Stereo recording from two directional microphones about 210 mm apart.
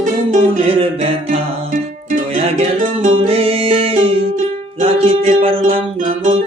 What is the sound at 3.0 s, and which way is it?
Music, 30° right (ahead or behind).